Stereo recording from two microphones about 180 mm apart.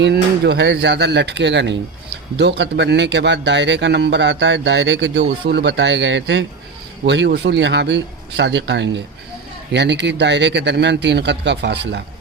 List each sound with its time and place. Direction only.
0.0 s a man's voice: 65° right (ahead or behind); by 6.4 s 80° right
7.0 s a man's voice: 70° right (ahead or behind)